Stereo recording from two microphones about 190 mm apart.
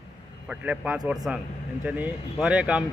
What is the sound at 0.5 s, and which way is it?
A man's voice, 5° right (ahead or behind).